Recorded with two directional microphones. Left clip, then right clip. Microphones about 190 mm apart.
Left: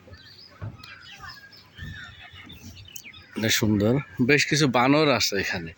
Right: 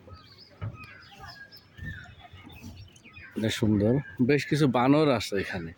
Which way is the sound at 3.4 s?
5° right (ahead or behind).